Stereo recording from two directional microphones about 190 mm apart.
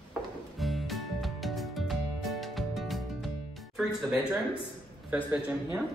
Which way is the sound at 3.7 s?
5° right (ahead or behind).